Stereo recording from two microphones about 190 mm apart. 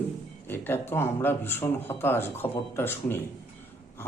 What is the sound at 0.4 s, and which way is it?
Speech, 10° left (ahead or behind).